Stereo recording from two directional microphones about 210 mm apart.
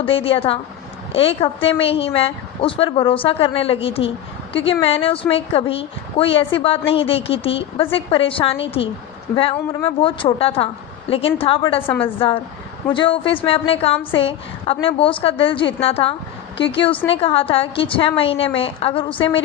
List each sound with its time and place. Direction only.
0.0 s a woman's voice: 25° left (ahead or behind)
11.9 s a woman's voice: 10° left (ahead or behind)
12.9 s a woman's voice: 25° left (ahead or behind)